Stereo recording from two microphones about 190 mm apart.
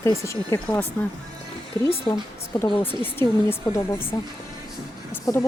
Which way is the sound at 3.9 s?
10° left (ahead or behind).